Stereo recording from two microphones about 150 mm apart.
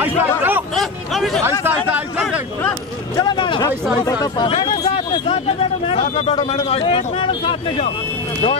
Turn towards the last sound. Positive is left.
turn(degrees=40)  # may be behind; listen again after turning